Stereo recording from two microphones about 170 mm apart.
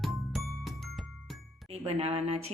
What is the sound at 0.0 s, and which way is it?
Music, centre (ahead or behind).